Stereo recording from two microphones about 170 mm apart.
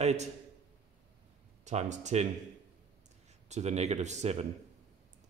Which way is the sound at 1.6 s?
40° right (ahead or behind).